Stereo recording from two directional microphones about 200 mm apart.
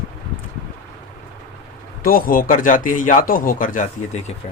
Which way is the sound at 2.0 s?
45° left (ahead or behind).